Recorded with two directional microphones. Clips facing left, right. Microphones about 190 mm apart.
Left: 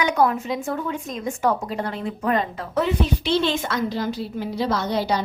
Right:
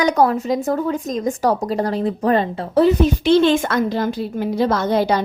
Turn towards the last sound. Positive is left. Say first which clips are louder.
# right 5 dB
turn(degrees=-50)  # may be behind; listen again after turning